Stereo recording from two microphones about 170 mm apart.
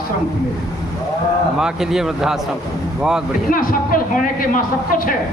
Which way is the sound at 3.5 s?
55° left (ahead or behind).